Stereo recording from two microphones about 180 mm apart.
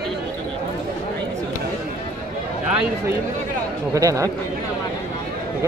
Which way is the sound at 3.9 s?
20° right (ahead or behind).